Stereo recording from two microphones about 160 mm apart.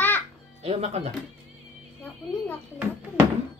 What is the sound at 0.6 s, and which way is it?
Speech, 40° right (ahead or behind).